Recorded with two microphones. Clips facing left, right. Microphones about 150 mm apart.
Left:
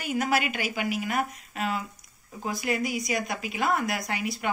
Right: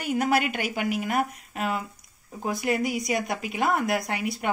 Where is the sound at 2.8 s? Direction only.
65° right (ahead or behind).